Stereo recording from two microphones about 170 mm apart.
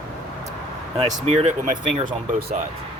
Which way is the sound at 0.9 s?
40° right (ahead or behind).